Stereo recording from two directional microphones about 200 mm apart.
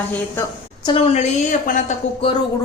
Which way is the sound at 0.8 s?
30° left (ahead or behind).